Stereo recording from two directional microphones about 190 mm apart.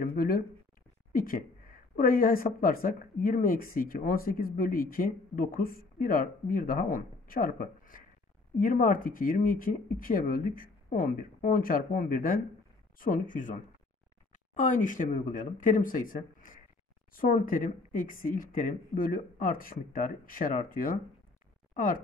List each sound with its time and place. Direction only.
0.0 s speech: 50° left (ahead or behind)